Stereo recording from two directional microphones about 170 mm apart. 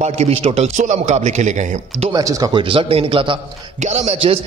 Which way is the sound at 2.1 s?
20° right (ahead or behind).